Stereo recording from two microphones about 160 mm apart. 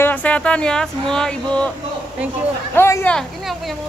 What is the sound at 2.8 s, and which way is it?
Speech, 15° left (ahead or behind).